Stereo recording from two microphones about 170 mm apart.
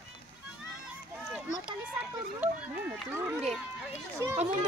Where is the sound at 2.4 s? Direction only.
10° right (ahead or behind).